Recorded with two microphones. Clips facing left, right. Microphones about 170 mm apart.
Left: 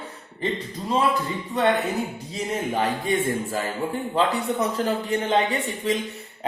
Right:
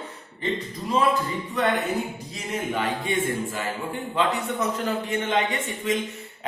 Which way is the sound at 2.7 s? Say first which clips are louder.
Left 2 dB; 40° left (ahead or behind).